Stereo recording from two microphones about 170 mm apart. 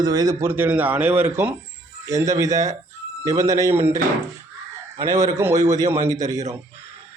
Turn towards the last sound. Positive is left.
turn(degrees=-20)  # may be behind; listen again after turning